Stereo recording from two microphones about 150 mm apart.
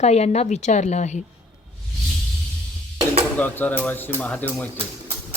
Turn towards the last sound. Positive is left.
turn(degrees=10)  # may be behind; listen again after turning